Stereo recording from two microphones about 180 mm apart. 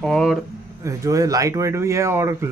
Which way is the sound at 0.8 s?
20° right (ahead or behind).